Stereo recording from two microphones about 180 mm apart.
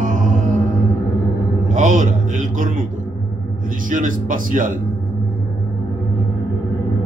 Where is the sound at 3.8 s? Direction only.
50° right (ahead or behind).